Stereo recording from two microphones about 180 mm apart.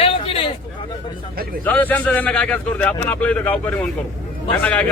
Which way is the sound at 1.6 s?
10° left (ahead or behind).